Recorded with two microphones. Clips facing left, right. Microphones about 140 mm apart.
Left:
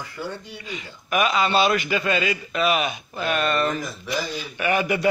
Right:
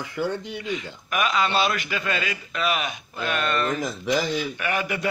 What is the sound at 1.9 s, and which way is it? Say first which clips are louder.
A man's voice: left 5 dB; 15° left (ahead or behind).